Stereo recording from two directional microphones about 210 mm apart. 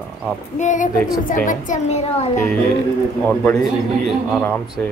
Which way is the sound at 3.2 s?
5° left (ahead or behind).